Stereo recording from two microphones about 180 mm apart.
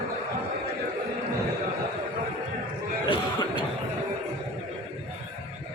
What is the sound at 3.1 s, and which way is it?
Cough, 25° left (ahead or behind).